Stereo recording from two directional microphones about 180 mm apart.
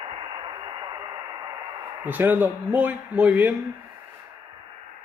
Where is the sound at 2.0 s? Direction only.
10° right (ahead or behind).